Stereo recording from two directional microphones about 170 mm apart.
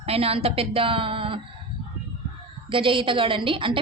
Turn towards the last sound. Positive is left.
turn(degrees=-30)  # may be behind; listen again after turning